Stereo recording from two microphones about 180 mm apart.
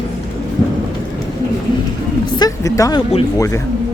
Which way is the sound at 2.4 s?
20° left (ahead or behind).